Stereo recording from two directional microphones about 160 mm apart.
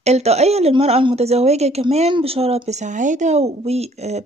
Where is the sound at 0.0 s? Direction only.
40° right (ahead or behind).